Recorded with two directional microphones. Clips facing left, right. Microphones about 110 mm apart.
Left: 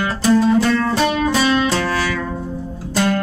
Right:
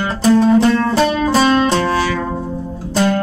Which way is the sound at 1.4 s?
25° right (ahead or behind).